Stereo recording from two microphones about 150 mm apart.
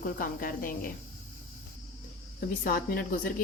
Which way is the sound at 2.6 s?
70° left (ahead or behind).